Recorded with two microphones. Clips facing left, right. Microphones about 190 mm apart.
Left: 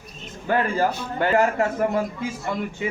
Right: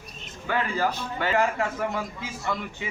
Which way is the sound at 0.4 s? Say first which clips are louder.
Left 5 dB; 45° left (ahead or behind).